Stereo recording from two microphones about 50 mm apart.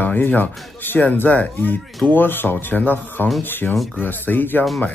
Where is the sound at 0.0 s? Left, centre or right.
Left.